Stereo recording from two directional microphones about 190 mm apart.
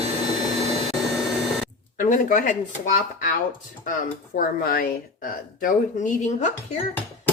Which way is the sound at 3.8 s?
45° left (ahead or behind).